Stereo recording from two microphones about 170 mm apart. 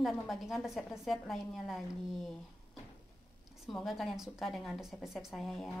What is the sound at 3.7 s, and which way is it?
A woman's voice, centre (ahead or behind).